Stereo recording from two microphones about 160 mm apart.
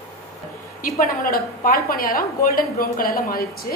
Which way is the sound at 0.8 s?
60° left (ahead or behind).